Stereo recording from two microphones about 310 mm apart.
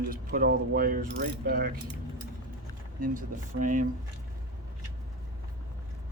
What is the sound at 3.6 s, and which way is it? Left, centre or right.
Speech, right.